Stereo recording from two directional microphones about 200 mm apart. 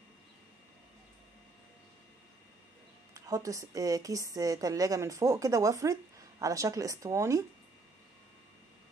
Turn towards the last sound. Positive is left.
turn(degrees=-15)  # may be behind; listen again after turning